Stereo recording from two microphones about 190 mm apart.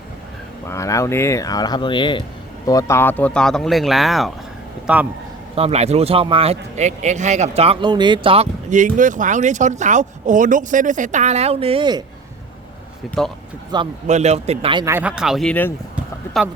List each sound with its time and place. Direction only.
0.7 s a man's voice: 15° left (ahead or behind); by 5.0 s 5° right (ahead or behind)
5.5 s speech: 35° right (ahead or behind)
8.7 s speech: 40° right (ahead or behind); by 12.0 s 25° right (ahead or behind)
13.7 s a man's voice: 20° right (ahead or behind)
14.1 s speech: 35° right (ahead or behind)
14.8 s speech: 10° right (ahead or behind); by 15.7 s 5° left (ahead or behind)